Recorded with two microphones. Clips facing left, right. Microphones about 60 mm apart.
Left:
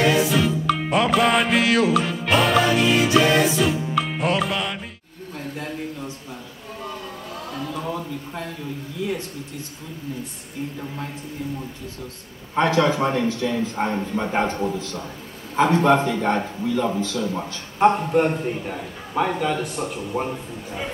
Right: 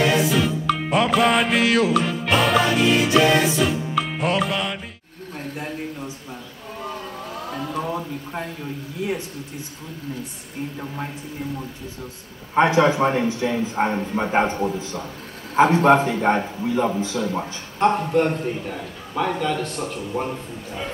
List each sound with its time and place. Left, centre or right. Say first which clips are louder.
0.1 s music: even; centre
5.6 s a man's voice: even; centre
7.5 s a man's voice: right 2 dB; centre
12.5 s a man's voice: right 2 dB; right
17.7 s a man's voice: left 1 dB; centre